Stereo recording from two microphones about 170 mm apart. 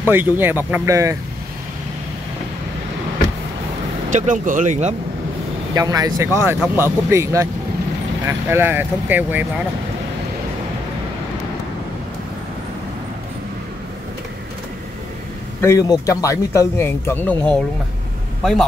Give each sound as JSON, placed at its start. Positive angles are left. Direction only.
{"t": 0.1, "sound": "speech", "side_deg": -10}
{"t": 4.1, "sound": "speech", "side_deg": -50}
{"t": 5.8, "sound": "speech", "side_deg": -20}
{"t": 15.6, "sound": "a man's voice", "side_deg": 20}